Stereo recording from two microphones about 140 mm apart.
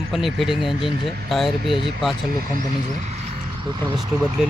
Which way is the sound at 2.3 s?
90° right.